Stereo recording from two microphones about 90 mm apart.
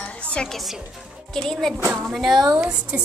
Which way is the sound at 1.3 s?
5° left (ahead or behind).